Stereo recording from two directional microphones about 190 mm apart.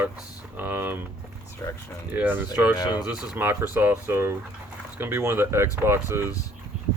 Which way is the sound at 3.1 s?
10° right (ahead or behind).